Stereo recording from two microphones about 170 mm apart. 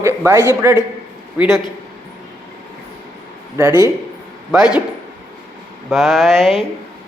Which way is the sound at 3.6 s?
20° right (ahead or behind).